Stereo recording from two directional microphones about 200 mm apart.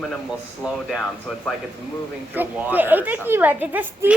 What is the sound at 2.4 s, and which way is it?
Speech, 10° right (ahead or behind).